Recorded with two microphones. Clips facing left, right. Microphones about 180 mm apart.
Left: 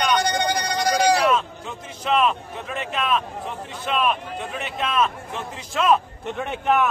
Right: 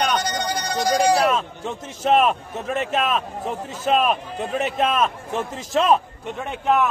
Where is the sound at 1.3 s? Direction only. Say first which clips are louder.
Left 1 dB; 45° right (ahead or behind).